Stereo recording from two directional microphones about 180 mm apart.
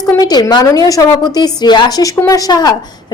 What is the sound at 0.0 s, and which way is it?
A woman's voice, 20° left (ahead or behind).